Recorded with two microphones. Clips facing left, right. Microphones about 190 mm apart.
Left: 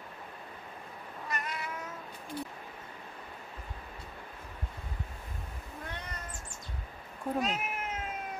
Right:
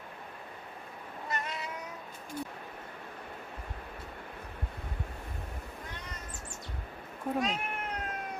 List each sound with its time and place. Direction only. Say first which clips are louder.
1.3 s cat: right 1 dB; 25° right (ahead or behind)
2.4 s speech: right 1 dB; 45° right (ahead or behind)
7.3 s cat: even; 5° left (ahead or behind)